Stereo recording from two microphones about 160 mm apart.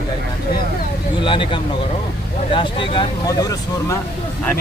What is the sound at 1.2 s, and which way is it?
Speech, 30° left (ahead or behind).